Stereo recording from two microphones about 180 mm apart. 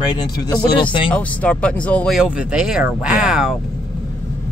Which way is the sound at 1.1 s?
5° left (ahead or behind).